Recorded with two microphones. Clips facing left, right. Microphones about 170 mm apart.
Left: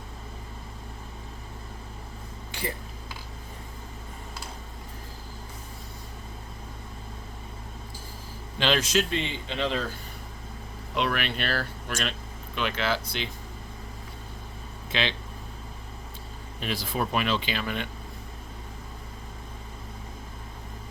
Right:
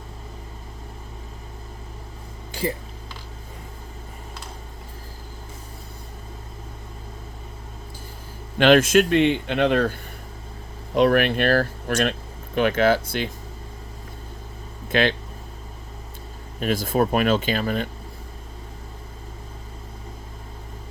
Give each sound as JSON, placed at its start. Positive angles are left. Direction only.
{"t": 8.5, "sound": "speech", "side_deg": -55}
{"t": 10.9, "sound": "speech", "side_deg": -45}
{"t": 14.9, "sound": "speech", "side_deg": -50}
{"t": 16.6, "sound": "speech", "side_deg": -45}